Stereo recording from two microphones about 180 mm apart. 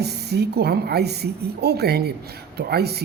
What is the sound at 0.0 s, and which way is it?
A woman's voice, 65° right (ahead or behind).